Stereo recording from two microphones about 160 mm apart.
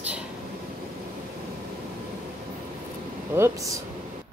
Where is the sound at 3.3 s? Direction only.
20° right (ahead or behind).